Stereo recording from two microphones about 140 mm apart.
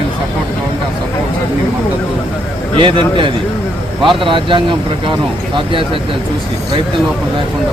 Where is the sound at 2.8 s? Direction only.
40° right (ahead or behind).